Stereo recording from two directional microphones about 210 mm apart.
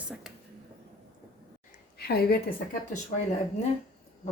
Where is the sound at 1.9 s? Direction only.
50° left (ahead or behind).